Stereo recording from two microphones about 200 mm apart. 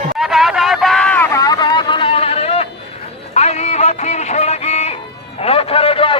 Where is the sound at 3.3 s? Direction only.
35° left (ahead or behind).